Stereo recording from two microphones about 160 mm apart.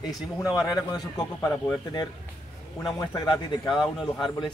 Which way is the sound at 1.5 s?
10° left (ahead or behind).